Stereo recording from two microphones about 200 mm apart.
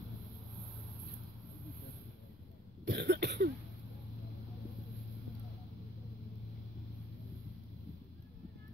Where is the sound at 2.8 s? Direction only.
55° right (ahead or behind).